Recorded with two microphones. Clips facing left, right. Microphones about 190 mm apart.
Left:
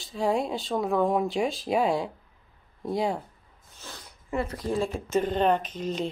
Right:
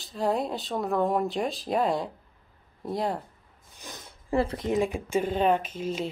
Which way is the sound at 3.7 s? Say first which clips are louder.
Right 1 dB; 15° right (ahead or behind).